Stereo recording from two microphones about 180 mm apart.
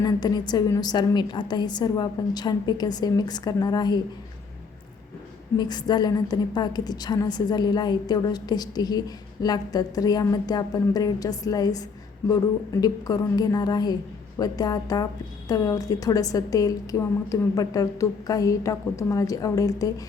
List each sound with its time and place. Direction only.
0.0 s a woman's voice: 20° left (ahead or behind)
5.5 s a woman's voice: 25° left (ahead or behind)